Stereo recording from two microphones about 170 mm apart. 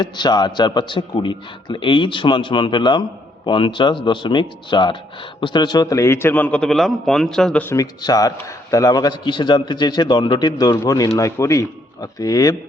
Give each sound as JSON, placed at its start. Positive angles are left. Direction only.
{"t": 0.0, "sound": "a man's voice", "side_deg": 25}